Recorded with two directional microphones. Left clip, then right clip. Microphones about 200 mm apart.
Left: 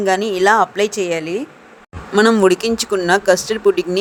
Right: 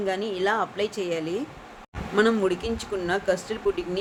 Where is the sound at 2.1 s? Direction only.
55° left (ahead or behind).